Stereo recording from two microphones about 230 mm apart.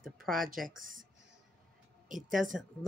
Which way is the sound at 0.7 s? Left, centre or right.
Right.